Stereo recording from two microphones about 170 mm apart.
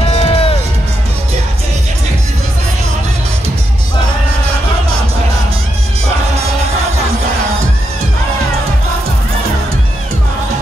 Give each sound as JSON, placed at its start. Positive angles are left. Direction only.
{"t": 0.1, "sound": "music", "side_deg": 35}